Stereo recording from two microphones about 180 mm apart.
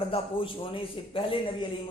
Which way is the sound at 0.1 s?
30° left (ahead or behind).